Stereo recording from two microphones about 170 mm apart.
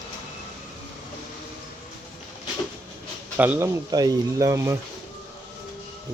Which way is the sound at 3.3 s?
10° right (ahead or behind).